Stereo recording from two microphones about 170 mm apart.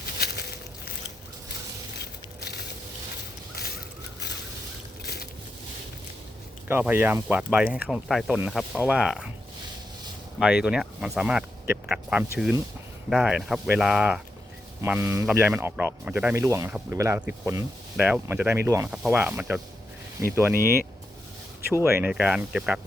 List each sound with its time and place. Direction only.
2.4 s a sound: 70° left (ahead or behind)
5.0 s boat: 65° left (ahead or behind)
6.7 s speech: 10° right (ahead or behind)
10.4 s speech: 5° right (ahead or behind)
14.8 s speech: 15° right (ahead or behind)
21.7 s speech: 15° right (ahead or behind)